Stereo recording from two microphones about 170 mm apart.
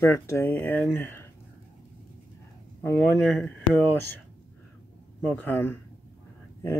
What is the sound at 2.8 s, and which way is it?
Speech, 10° left (ahead or behind).